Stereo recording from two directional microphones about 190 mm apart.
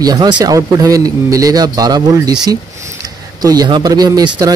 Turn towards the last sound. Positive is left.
turn(degrees=-20)  # may be behind; listen again after turning